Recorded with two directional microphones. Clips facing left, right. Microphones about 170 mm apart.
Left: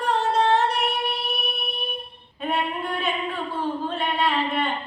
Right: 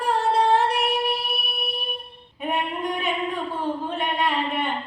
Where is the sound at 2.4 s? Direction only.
15° right (ahead or behind).